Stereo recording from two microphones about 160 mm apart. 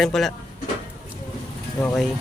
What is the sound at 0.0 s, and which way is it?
Speech, centre (ahead or behind).